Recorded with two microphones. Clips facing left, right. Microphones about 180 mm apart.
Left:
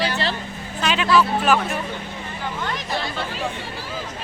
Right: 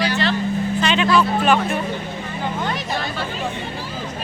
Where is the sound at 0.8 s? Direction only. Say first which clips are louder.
Even; 5° left (ahead or behind).